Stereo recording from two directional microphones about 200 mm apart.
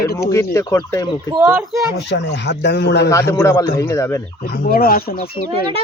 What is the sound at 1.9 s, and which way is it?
Speech, 60° left (ahead or behind).